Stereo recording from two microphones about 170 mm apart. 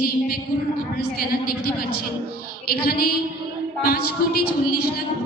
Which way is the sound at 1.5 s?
65° left (ahead or behind).